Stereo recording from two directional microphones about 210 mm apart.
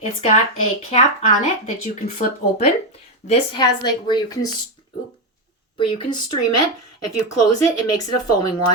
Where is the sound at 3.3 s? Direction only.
20° left (ahead or behind).